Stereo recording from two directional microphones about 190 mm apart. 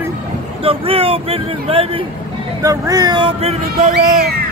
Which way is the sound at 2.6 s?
20° right (ahead or behind).